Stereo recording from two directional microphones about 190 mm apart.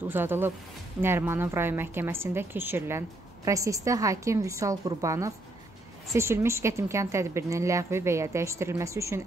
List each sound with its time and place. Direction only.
0.1 s a woman's voice: 10° right (ahead or behind)